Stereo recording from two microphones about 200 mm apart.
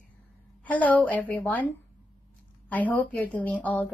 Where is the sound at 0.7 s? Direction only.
5° left (ahead or behind).